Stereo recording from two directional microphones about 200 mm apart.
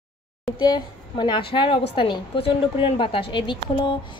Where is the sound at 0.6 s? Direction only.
20° left (ahead or behind).